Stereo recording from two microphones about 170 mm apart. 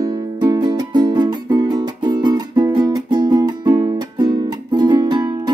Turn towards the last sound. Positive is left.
turn(degrees=-25)  # may be behind; listen again after turning